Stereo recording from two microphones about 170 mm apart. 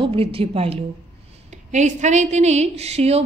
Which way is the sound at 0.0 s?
35° right (ahead or behind).